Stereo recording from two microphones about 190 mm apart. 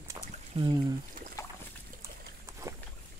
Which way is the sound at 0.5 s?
30° right (ahead or behind).